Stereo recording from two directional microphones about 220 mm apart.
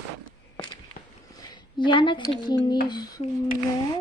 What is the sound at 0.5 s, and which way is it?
Fireworks, 20° left (ahead or behind).